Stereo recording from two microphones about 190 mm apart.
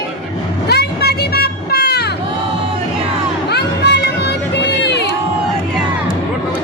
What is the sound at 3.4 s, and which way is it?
Music, 60° left (ahead or behind).